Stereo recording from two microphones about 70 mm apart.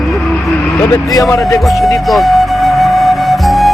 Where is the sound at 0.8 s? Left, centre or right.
Left.